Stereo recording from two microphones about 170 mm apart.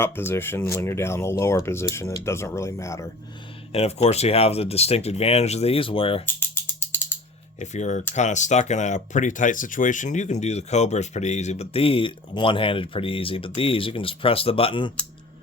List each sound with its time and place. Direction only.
0.0 s speech: 15° left (ahead or behind)
3.7 s speech: 35° left (ahead or behind)
6.2 s ratchet: 10° left (ahead or behind)
7.6 s speech: 45° left (ahead or behind)